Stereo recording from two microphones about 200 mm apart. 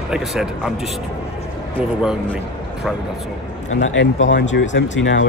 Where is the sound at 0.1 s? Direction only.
5° right (ahead or behind).